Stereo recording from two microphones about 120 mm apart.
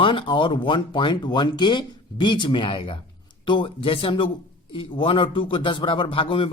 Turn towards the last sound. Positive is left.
turn(degrees=45)  # may be behind; listen again after turning